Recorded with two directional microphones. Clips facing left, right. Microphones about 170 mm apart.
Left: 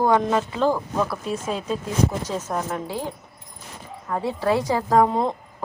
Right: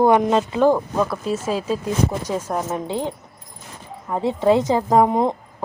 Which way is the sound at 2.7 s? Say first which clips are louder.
Right 4 dB; 20° right (ahead or behind).